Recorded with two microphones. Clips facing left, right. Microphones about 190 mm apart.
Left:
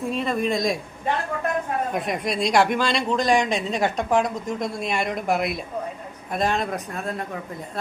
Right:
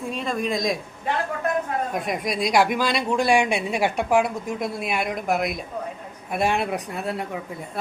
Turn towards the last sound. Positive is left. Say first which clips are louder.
# right 1 dB
turn(degrees=-15)  # may be behind; listen again after turning